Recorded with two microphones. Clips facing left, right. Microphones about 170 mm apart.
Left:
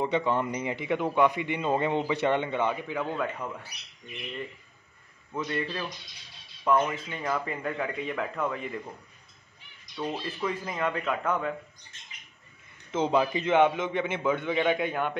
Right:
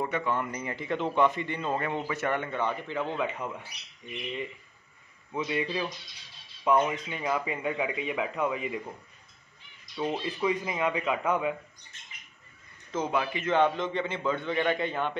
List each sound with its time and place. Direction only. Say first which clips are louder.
0.0 s a man's voice: left 3 dB; 25° left (ahead or behind)
3.2 s speech: even; 5° right (ahead or behind)
5.3 s speech: right 1 dB; 10° right (ahead or behind)
10.0 s speech: right 3 dB; 15° right (ahead or behind)
12.9 s a man's voice: left 4 dB; 25° left (ahead or behind); by 15.1 s 5° left (ahead or behind)